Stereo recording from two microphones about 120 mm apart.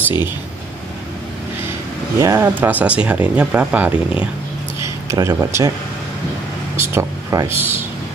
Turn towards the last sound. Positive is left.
turn(degrees=-20)  # may be behind; listen again after turning